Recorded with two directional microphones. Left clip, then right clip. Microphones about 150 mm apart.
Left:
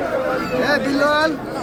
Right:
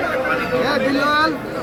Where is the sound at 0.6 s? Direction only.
30° left (ahead or behind).